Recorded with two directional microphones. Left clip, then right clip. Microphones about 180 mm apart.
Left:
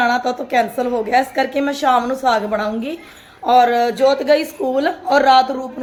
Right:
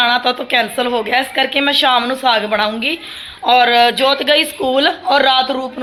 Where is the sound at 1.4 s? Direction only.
10° left (ahead or behind).